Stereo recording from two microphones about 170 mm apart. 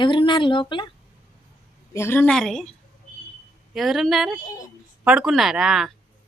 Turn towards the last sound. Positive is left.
turn(degrees=0)  # may be behind; listen again after turning